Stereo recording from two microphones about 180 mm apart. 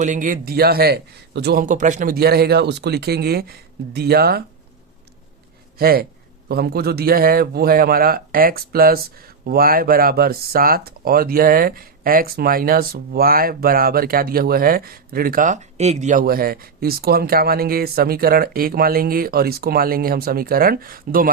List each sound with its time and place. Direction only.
0.0 s speech: 45° right (ahead or behind); by 1.6 s 65° right (ahead or behind)
1.6 s speech: 45° right (ahead or behind); by 4.4 s 60° right (ahead or behind)
5.8 s speech: 55° right (ahead or behind)